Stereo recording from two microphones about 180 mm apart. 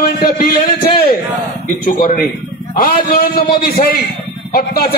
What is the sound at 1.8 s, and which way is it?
A man's voice, 55° left (ahead or behind).